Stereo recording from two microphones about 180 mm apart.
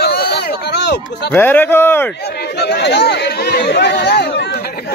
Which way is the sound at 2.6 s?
70° left (ahead or behind).